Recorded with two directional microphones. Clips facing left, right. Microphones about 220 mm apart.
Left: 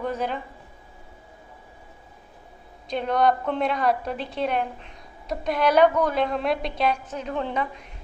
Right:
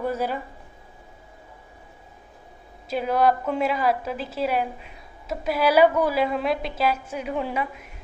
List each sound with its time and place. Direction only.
0.0 s a man's voice: 5° right (ahead or behind)
2.9 s a woman's voice: 5° right (ahead or behind)